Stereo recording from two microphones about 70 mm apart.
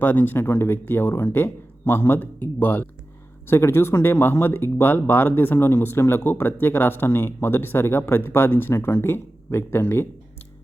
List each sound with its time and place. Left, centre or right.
0.0 s speech: left